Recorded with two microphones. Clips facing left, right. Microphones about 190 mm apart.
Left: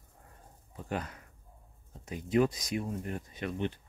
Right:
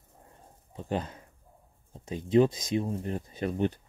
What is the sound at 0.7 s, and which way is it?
Speech, 25° right (ahead or behind).